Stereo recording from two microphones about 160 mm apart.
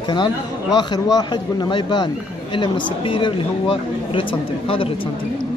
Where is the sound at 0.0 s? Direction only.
30° left (ahead or behind).